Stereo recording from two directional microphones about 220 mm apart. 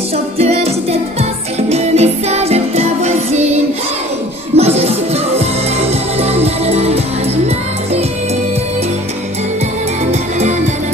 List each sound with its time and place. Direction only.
0.4 s music: 30° right (ahead or behind)